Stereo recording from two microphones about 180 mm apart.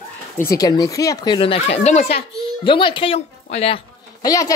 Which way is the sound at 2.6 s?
25° left (ahead or behind).